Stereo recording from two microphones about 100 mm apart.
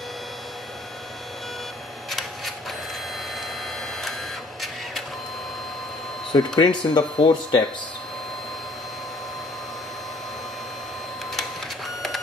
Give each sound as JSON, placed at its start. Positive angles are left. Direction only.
{"t": 2.0, "sound": "rub", "side_deg": 0}
{"t": 6.3, "sound": "speech", "side_deg": 50}